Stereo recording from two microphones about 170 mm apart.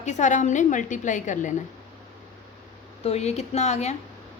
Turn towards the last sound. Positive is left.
turn(degrees=40)  # may be behind; listen again after turning